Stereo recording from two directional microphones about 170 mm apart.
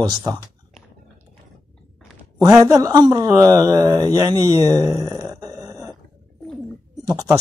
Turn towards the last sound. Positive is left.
turn(degrees=-20)  # may be behind; listen again after turning